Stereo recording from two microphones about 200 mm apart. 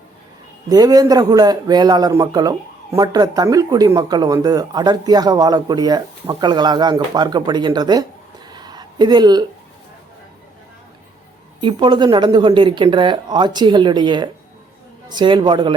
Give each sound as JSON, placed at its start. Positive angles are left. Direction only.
{"t": 0.7, "sound": "a man's voice", "side_deg": -20}
{"t": 8.4, "sound": "a sound", "side_deg": -20}
{"t": 11.6, "sound": "a man's voice", "side_deg": -25}